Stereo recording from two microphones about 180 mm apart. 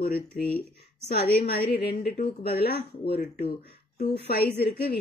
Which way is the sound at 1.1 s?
60° left (ahead or behind).